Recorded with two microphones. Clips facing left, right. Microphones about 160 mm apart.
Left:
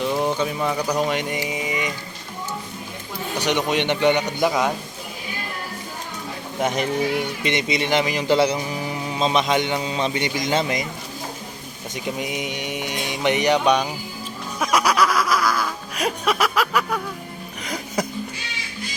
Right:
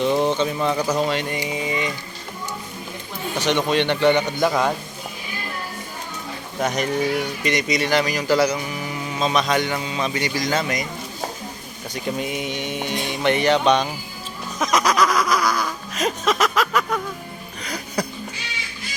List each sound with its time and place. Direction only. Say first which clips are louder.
0.0 s a sound: right 3 dB; 5° left (ahead or behind)
1.5 s music: right 1 dB; 15° left (ahead or behind)
3.3 s music: right 2 dB; 15° left (ahead or behind)
6.6 s speech: even; 25° left (ahead or behind)
11.9 s music: right 1 dB; 15° left (ahead or behind)
14.6 s snicker: even; 10° left (ahead or behind)
17.6 s music: left 1 dB; 20° left (ahead or behind)